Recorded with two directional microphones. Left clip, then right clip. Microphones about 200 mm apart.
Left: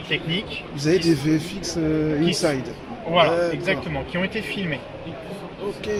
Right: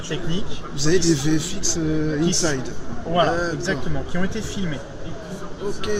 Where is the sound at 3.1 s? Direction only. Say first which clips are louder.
Left 2 dB; 30° left (ahead or behind).